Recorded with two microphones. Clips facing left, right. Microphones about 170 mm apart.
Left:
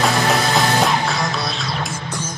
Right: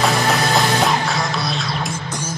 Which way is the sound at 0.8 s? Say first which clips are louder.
Even; centre (ahead or behind).